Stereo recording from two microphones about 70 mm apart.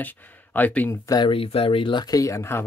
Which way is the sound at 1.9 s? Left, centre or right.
Left.